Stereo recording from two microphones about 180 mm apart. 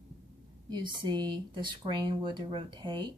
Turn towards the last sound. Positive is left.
turn(degrees=-25)  # may be behind; listen again after turning